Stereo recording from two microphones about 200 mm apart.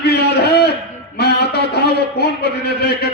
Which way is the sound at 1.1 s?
55° left (ahead or behind).